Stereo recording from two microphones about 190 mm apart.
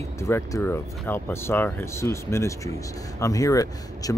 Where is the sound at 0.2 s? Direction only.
15° left (ahead or behind).